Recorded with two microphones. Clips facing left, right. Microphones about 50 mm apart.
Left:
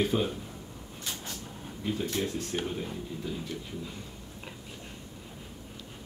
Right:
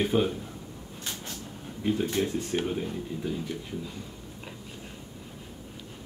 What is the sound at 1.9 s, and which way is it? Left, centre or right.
Speech, right.